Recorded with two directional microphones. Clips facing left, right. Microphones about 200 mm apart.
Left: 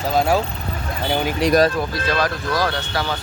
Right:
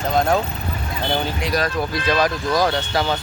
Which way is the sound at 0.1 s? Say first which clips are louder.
Even; 5° left (ahead or behind).